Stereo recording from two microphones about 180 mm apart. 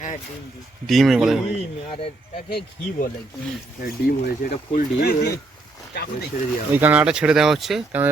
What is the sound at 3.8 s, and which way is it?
Speech, 55° left (ahead or behind).